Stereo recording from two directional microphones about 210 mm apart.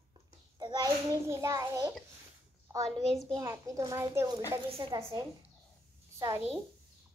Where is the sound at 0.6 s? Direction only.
20° right (ahead or behind).